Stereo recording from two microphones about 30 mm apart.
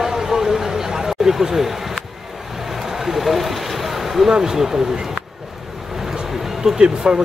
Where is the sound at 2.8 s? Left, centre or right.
Centre.